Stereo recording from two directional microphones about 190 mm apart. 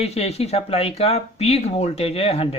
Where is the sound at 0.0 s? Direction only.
35° left (ahead or behind).